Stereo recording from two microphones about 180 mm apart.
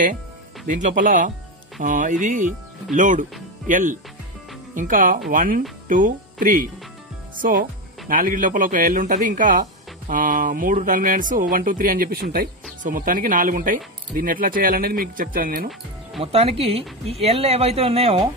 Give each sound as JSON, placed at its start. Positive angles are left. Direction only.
{"t": 0.7, "sound": "speech", "side_deg": -45}
{"t": 7.3, "sound": "speech", "side_deg": -50}
{"t": 16.2, "sound": "speech", "side_deg": -35}